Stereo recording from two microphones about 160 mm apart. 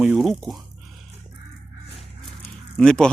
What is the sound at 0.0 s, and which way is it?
Drip, 5° right (ahead or behind).